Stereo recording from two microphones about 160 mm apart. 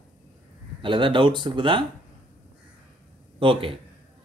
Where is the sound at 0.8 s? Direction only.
30° right (ahead or behind).